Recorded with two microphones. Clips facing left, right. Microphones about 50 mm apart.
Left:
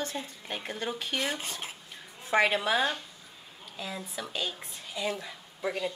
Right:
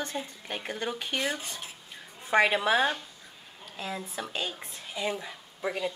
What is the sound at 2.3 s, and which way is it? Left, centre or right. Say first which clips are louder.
A woman's voice: right 2 dB; centre.